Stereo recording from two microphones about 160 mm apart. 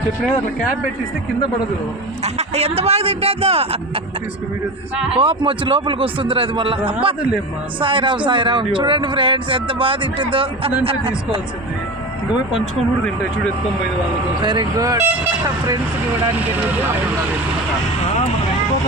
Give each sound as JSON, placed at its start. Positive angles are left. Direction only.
{"t": 2.2, "sound": "speech", "side_deg": -40}
{"t": 5.1, "sound": "speech", "side_deg": -30}
{"t": 14.4, "sound": "speech", "side_deg": -25}
{"t": 16.3, "sound": "speech", "side_deg": -10}